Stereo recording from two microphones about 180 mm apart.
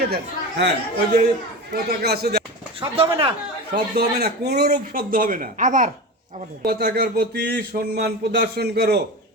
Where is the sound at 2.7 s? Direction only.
30° right (ahead or behind).